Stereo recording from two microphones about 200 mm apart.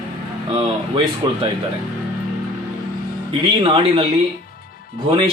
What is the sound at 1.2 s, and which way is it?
Speech, 20° right (ahead or behind).